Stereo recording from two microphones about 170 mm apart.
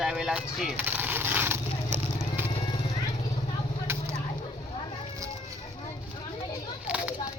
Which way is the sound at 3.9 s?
15° right (ahead or behind).